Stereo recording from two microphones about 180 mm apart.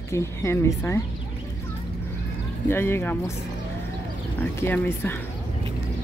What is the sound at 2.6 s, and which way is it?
Speech, 15° left (ahead or behind).